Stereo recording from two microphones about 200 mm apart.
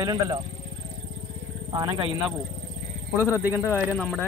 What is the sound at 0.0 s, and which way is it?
Speech, 20° right (ahead or behind).